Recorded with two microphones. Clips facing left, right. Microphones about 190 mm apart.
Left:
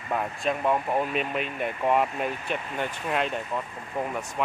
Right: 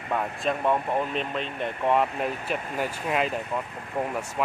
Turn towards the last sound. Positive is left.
turn(degrees=0)  # may be behind; listen again after turning